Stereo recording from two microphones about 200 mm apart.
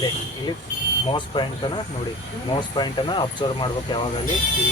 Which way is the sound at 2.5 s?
20° left (ahead or behind).